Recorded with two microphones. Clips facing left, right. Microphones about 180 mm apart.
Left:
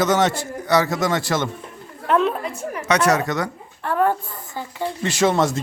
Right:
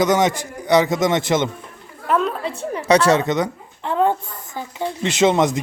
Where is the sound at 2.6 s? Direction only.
30° right (ahead or behind).